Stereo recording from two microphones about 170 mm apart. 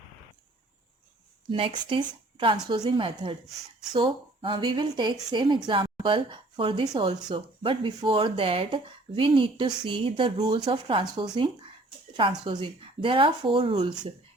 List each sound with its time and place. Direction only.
1.5 s speech: 30° right (ahead or behind)
12.5 s speech: 30° right (ahead or behind)